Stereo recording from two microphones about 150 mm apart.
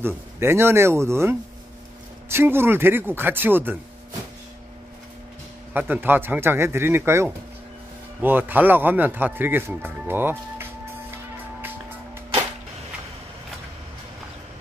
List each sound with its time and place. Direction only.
0.0 s speech: 15° right (ahead or behind)
5.7 s speech: 10° right (ahead or behind)